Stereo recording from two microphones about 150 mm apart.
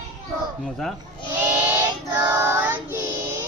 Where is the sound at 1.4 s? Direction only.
15° right (ahead or behind).